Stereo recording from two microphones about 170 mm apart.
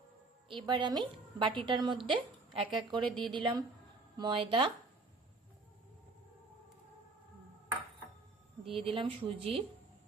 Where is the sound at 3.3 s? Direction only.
30° right (ahead or behind).